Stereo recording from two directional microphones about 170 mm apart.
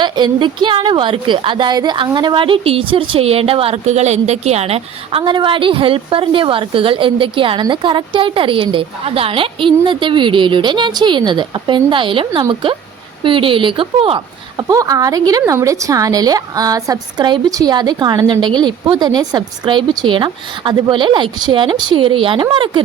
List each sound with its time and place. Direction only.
0.0 s a woman's voice: 25° right (ahead or behind)
14.7 s a woman's voice: 20° right (ahead or behind)